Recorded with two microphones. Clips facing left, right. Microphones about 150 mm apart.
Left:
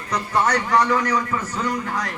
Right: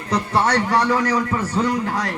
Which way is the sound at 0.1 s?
30° right (ahead or behind).